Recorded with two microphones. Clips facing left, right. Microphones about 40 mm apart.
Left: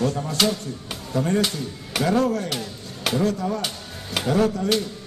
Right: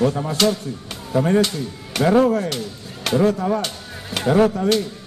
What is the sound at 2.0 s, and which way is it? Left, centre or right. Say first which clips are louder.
Speech: right 6 dB; centre.